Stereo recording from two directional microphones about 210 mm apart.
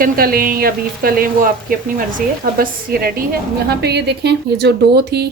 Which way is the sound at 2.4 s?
45° right (ahead or behind).